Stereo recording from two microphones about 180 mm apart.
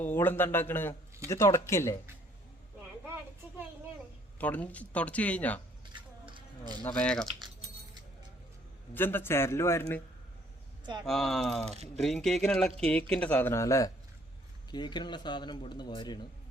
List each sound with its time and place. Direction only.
0.0 s speech: 10° left (ahead or behind)
4.4 s speech: 10° left (ahead or behind)
5.9 s a sound: 25° right (ahead or behind)
6.7 s speech: 5° left (ahead or behind)
8.9 s speech: 10° left (ahead or behind)
11.0 s a man's voice: centre (ahead or behind); by 16.2 s 25° left (ahead or behind)